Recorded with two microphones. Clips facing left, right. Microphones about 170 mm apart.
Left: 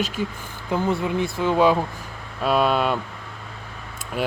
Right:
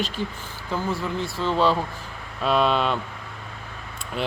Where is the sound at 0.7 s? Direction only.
20° left (ahead or behind).